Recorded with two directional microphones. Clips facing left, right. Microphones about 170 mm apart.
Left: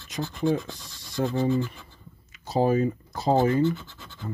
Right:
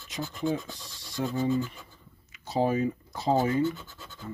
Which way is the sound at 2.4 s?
40° left (ahead or behind).